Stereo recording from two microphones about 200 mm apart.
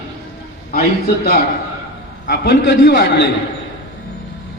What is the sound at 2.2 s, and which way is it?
A man's voice, 60° left (ahead or behind).